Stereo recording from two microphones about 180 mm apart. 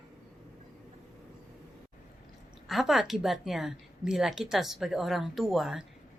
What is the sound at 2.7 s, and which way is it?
A woman's voice, centre (ahead or behind).